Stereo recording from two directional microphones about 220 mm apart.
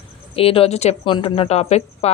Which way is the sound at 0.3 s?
25° left (ahead or behind).